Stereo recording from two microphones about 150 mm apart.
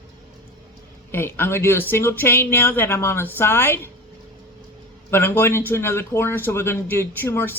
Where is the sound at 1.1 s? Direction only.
15° left (ahead or behind).